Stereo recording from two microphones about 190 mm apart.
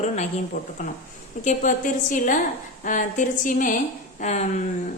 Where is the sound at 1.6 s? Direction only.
40° left (ahead or behind).